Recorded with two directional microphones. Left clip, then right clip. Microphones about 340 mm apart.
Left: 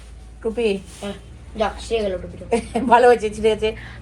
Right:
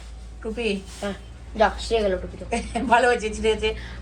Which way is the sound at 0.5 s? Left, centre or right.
Centre.